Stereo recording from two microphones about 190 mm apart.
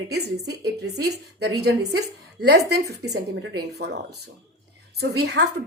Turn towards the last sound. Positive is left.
turn(degrees=-60)  # may be behind; listen again after turning